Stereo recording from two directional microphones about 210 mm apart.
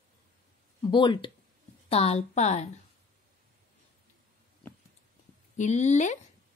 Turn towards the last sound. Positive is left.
turn(degrees=35)  # may be behind; listen again after turning